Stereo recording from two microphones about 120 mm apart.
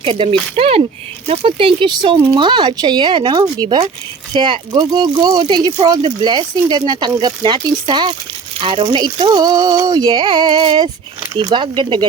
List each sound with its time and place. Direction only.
0.0 s speech: 45° right (ahead or behind)